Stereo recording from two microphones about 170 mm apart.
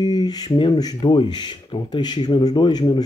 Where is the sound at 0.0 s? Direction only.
25° left (ahead or behind).